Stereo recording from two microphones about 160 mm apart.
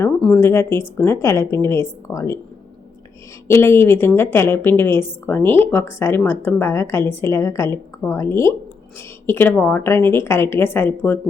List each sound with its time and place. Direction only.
0.2 s a woman's voice: 10° left (ahead or behind)
3.5 s a woman's voice: 15° left (ahead or behind)